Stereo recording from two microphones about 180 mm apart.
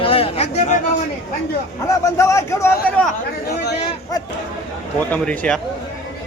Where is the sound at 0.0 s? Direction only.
30° left (ahead or behind).